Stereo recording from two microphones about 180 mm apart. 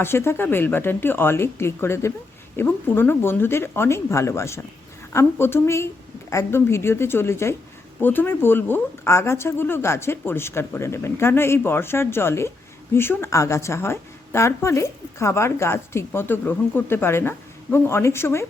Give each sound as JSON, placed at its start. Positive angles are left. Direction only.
{"t": 0.0, "sound": "a woman's voice", "side_deg": 15}